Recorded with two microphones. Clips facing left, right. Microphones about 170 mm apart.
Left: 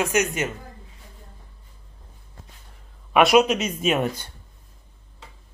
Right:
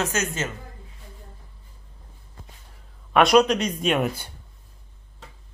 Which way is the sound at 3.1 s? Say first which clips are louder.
Even; 5° left (ahead or behind).